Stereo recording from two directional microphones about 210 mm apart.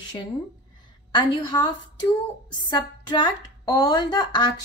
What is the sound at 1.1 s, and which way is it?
A woman's voice, 20° left (ahead or behind).